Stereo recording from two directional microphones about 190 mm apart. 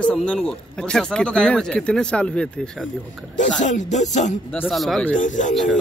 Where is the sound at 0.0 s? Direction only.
5° left (ahead or behind).